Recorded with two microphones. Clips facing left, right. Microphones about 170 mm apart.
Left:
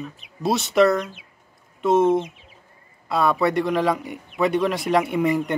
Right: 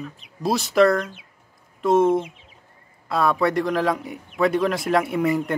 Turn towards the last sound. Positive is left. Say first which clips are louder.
# left 1 dB
turn(degrees=0)  # may be behind; listen again after turning